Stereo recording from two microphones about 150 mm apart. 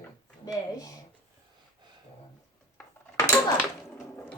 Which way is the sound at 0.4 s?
25° left (ahead or behind).